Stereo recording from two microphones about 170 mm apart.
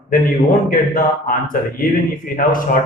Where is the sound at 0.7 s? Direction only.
55° left (ahead or behind).